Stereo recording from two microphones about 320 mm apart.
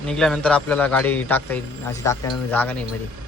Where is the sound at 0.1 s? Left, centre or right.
Centre.